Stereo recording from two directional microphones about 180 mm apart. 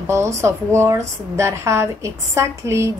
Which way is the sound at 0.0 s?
15° right (ahead or behind).